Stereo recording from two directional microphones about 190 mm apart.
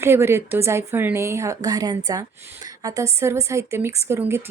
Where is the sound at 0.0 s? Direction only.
15° right (ahead or behind).